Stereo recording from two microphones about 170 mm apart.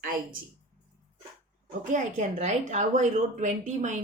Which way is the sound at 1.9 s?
45° right (ahead or behind).